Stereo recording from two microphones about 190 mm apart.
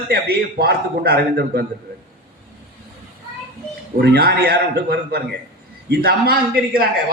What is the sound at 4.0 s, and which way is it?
A man's voice, 60° right (ahead or behind).